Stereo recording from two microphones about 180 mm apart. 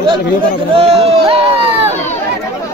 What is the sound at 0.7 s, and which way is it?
Speech, 35° right (ahead or behind).